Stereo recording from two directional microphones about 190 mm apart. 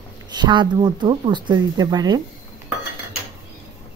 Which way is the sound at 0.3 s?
25° right (ahead or behind).